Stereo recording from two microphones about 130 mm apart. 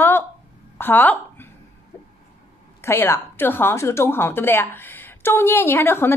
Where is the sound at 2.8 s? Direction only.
20° left (ahead or behind).